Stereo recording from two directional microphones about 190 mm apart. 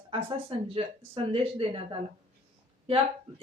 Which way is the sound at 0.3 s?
30° right (ahead or behind).